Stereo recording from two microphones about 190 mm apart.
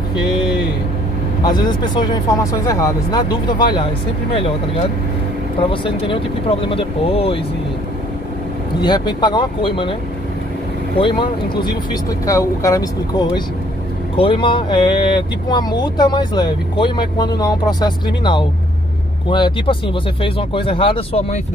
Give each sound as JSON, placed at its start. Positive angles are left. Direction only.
{"t": 1.4, "sound": "speech", "side_deg": 20}
{"t": 5.6, "sound": "speech", "side_deg": 25}
{"t": 8.8, "sound": "speech", "side_deg": 20}
{"t": 11.0, "sound": "speech", "side_deg": 25}